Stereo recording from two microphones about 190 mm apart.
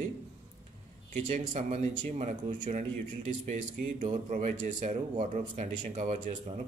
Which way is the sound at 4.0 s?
40° right (ahead or behind).